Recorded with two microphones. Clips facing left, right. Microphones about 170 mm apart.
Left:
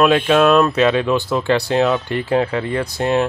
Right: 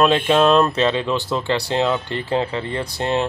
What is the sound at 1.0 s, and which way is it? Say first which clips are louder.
Speech: left 4 dB; 15° left (ahead or behind).